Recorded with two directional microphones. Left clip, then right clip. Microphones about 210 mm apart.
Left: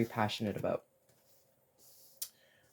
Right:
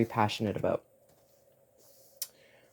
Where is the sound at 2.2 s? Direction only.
40° right (ahead or behind).